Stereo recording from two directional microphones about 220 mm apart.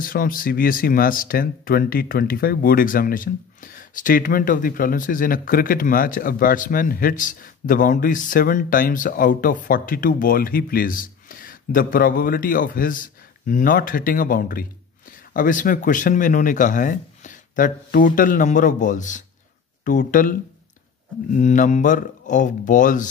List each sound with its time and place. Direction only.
0.0 s speech: 40° left (ahead or behind)